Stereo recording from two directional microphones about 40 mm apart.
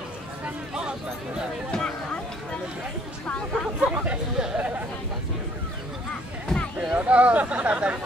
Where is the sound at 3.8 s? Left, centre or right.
Right.